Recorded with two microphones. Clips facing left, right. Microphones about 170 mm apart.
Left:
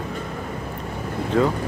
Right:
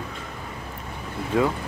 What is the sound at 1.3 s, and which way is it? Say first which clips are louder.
Speech: left 2 dB; 10° right (ahead or behind).